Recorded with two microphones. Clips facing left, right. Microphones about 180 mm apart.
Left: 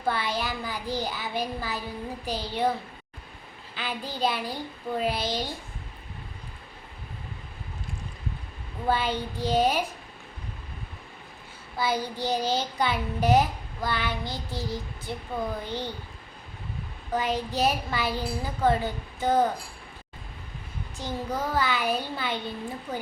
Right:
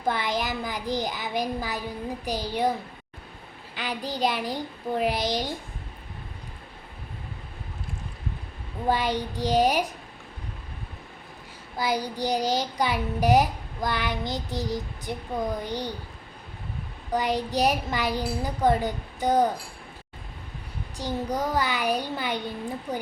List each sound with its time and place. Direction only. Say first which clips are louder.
0.0 s child singing: right 1 dB; 15° right (ahead or behind)
3.8 s child singing: right 2 dB; 15° right (ahead or behind)
8.9 s child singing: right 1 dB; 15° right (ahead or behind)
11.8 s child singing: right 1 dB; 15° right (ahead or behind)
17.1 s child singing: right 2 dB; 15° right (ahead or behind)
21.0 s child singing: right 3 dB; 15° right (ahead or behind)